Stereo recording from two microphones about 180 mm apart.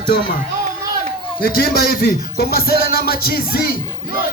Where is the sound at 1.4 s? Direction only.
55° left (ahead or behind).